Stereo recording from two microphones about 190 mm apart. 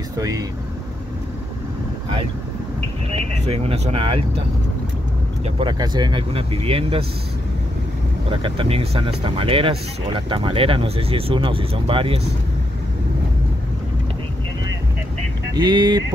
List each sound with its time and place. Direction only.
0.2 s speech: 20° right (ahead or behind)
3.1 s speech: 30° right (ahead or behind)
5.4 s speech: 25° right (ahead or behind)
8.3 s speech: 30° right (ahead or behind)
15.5 s speech: 25° right (ahead or behind)